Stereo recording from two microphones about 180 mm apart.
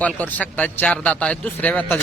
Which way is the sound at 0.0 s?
10° left (ahead or behind).